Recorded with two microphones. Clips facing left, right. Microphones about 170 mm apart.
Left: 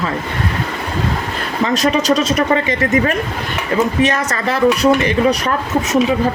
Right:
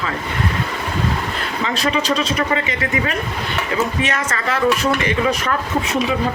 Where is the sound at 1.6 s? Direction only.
40° left (ahead or behind).